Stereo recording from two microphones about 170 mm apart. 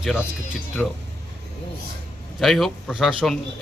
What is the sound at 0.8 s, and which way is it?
Speech, 5° left (ahead or behind).